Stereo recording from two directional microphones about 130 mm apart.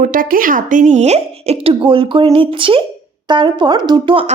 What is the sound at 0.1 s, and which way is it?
Speech, 90° right.